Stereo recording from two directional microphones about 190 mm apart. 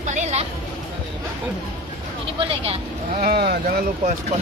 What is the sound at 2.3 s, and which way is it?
Vehicle, 30° right (ahead or behind).